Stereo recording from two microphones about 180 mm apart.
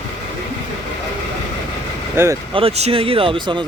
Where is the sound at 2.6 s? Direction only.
35° right (ahead or behind).